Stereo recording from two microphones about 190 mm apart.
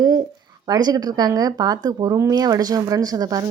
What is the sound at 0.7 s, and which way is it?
Speech, 20° right (ahead or behind).